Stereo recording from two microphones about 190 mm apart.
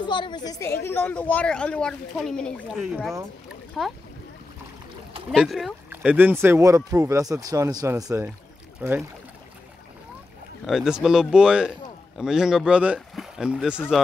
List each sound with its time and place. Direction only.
0.0 s a woman's voice: 25° left (ahead or behind); by 3.9 s centre (ahead or behind)
5.3 s speech: centre (ahead or behind)
10.7 s speech: 5° right (ahead or behind)